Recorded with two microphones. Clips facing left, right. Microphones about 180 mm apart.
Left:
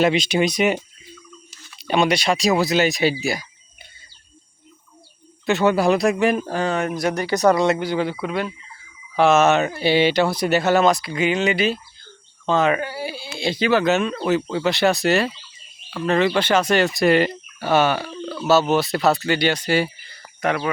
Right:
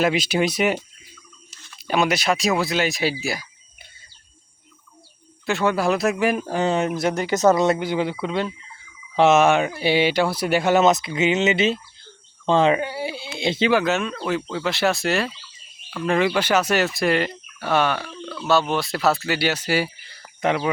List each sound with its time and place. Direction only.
0.0 s speech: 5° right (ahead or behind)
1.9 s speech: 5° right (ahead or behind)
5.5 s speech: centre (ahead or behind)
6.6 s speech: 25° right (ahead or behind)
13.8 s speech: centre (ahead or behind)
20.4 s speech: 20° right (ahead or behind)